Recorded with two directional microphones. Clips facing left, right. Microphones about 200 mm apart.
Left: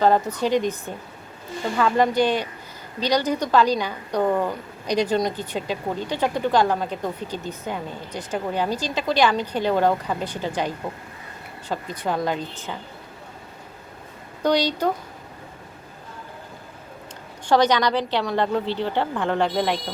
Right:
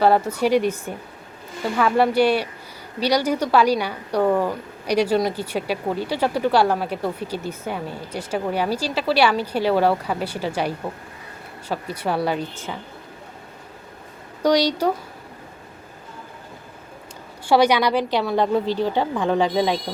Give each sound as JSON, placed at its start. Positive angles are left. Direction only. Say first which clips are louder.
{"t": 0.0, "sound": "speech", "louder": "right 2 dB", "side_deg": -10}
{"t": 1.7, "sound": "speech", "louder": "right 2 dB", "side_deg": -10}
{"t": 14.4, "sound": "speech", "louder": "right 3 dB", "side_deg": -10}
{"t": 17.4, "sound": "speech", "louder": "right 2 dB", "side_deg": -10}